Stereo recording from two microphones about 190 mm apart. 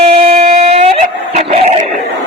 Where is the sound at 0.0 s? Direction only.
30° right (ahead or behind).